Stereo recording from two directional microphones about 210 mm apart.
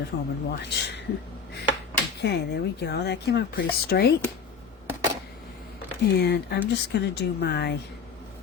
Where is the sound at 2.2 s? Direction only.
55° left (ahead or behind).